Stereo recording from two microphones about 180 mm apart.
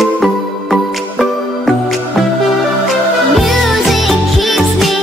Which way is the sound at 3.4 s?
Centre (ahead or behind).